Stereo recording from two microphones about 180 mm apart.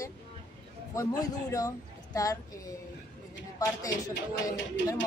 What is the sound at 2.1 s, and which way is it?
Speech, 20° left (ahead or behind).